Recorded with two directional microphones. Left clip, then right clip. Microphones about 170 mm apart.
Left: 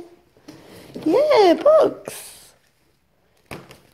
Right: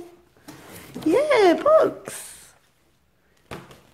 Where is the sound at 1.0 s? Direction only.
Centre (ahead or behind).